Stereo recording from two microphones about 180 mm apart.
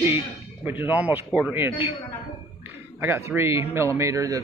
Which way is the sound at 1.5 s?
10° right (ahead or behind).